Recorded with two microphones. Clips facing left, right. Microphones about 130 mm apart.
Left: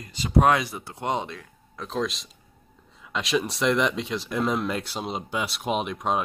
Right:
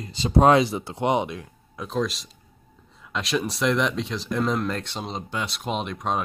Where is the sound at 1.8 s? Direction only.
Centre (ahead or behind).